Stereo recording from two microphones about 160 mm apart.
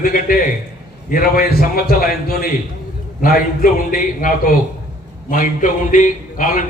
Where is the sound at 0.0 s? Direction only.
60° left (ahead or behind).